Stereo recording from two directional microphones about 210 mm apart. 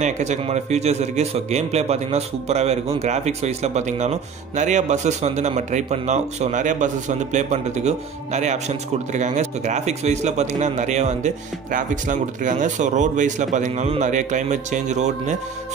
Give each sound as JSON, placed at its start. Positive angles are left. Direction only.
{"t": 0.0, "sound": "a man's voice", "side_deg": -35}